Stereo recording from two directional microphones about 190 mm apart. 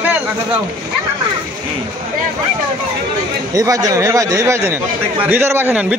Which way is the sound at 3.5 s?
20° right (ahead or behind).